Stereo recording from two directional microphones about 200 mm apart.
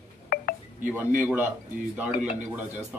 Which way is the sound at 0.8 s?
10° right (ahead or behind).